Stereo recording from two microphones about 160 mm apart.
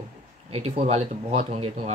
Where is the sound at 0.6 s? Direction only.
40° right (ahead or behind).